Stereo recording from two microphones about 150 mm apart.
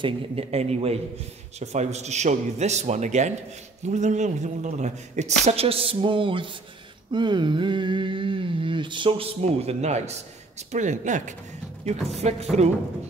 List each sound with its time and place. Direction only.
0.0 s speech: 45° right (ahead or behind)
7.1 s a sound: 30° right (ahead or behind); by 10.2 s 45° right (ahead or behind)
10.7 s speech: 55° right (ahead or behind)